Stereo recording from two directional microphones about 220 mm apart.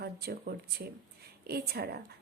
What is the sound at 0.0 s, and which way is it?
A woman's voice, 45° right (ahead or behind).